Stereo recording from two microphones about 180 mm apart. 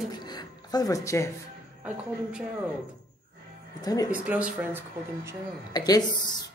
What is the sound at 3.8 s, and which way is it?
Speech, 20° left (ahead or behind).